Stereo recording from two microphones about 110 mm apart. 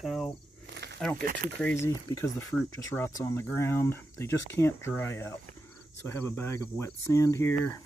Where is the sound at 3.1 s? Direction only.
25° left (ahead or behind).